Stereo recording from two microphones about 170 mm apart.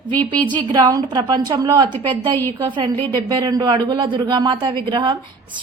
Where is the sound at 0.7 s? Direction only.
25° right (ahead or behind).